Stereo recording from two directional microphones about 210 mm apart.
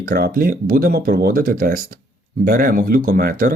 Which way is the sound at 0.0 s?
45° right (ahead or behind).